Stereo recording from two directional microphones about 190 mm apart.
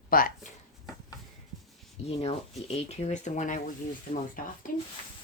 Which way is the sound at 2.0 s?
35° left (ahead or behind).